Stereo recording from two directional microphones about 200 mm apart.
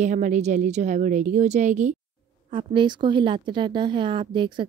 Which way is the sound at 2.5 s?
25° right (ahead or behind).